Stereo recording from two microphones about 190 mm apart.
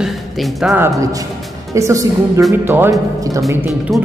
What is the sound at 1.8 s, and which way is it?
Speech, 15° right (ahead or behind).